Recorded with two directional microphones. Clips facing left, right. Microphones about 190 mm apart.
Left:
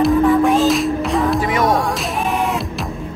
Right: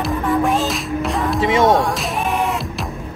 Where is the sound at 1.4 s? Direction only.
25° right (ahead or behind).